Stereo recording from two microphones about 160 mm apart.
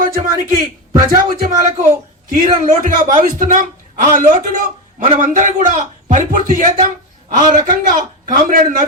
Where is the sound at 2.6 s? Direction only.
55° right (ahead or behind).